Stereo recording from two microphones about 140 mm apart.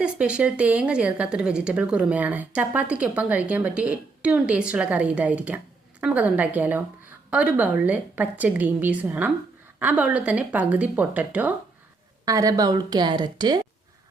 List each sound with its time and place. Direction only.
0.0 s a woman's voice: 10° right (ahead or behind)
12.2 s a woman's voice: 25° right (ahead or behind)